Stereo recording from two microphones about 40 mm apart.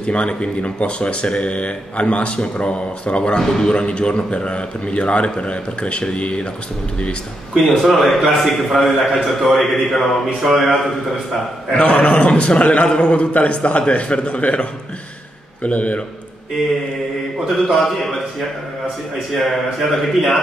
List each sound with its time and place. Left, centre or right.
0.0 s speech: left
3.3 s a man's voice: centre
3.7 s speech: left
7.5 s a man's voice: centre
11.7 s a man's voice: left
17.5 s a man's voice: centre
19.3 s a man's voice: centre